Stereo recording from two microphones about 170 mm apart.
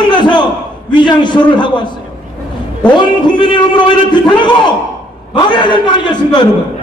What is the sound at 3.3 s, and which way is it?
A man's voice, 25° left (ahead or behind).